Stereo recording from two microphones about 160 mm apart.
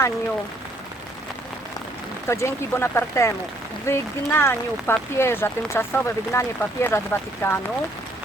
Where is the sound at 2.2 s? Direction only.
15° left (ahead or behind).